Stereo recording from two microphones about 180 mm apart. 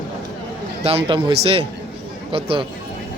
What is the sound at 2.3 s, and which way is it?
Speech, 30° right (ahead or behind).